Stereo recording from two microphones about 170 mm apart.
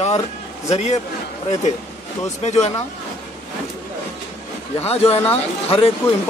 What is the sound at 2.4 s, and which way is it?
Speech, 40° left (ahead or behind).